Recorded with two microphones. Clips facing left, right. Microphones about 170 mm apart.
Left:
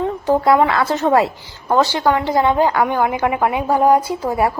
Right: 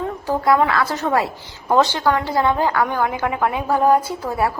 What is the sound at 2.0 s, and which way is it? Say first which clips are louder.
A woman's voice: left 3 dB; 20° left (ahead or behind).